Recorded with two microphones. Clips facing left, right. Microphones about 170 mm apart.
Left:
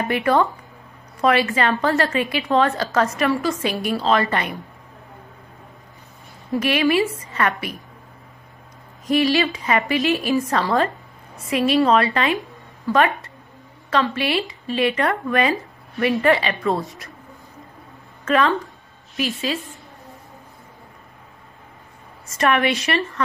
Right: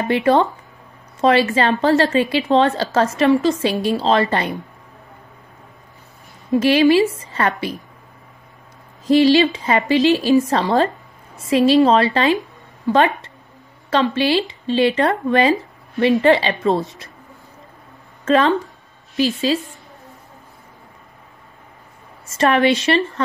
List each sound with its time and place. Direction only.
0.0 s speech: 25° right (ahead or behind)
6.6 s speech: 30° right (ahead or behind)
9.0 s speech: 30° right (ahead or behind)
18.2 s a woman's voice: 30° right (ahead or behind)
22.4 s speech: 30° right (ahead or behind)